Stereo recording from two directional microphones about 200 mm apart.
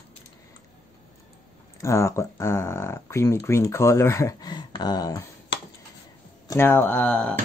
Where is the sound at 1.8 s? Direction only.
15° left (ahead or behind).